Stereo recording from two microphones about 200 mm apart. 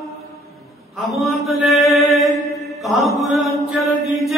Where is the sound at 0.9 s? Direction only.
Centre (ahead or behind).